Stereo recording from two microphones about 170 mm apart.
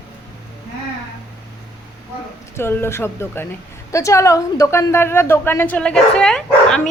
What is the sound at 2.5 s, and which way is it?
A woman's voice, 15° left (ahead or behind).